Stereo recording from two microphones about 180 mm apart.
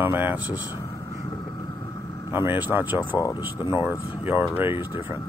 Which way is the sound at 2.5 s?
10° right (ahead or behind).